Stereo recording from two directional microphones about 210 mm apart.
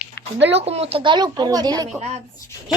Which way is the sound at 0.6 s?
30° right (ahead or behind).